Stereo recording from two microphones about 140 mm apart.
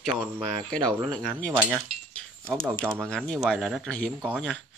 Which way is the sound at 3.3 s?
Centre (ahead or behind).